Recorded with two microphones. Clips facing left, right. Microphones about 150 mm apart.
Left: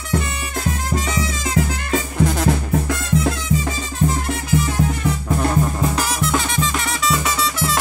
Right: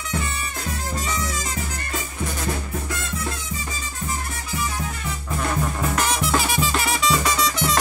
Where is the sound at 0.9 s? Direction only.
90° left.